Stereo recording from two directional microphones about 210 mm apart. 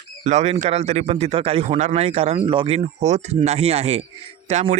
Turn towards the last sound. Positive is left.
turn(degrees=-30)  # may be behind; listen again after turning